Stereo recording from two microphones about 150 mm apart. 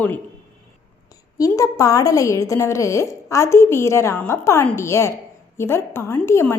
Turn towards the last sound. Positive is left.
turn(degrees=15)  # may be behind; listen again after turning